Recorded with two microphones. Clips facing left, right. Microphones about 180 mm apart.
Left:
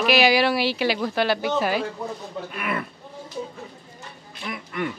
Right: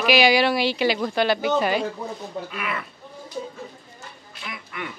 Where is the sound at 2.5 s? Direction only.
50° left (ahead or behind).